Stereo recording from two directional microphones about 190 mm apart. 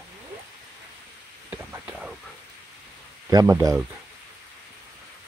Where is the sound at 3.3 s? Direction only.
20° right (ahead or behind).